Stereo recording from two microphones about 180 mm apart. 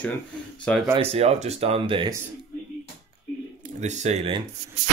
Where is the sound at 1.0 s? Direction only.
35° right (ahead or behind).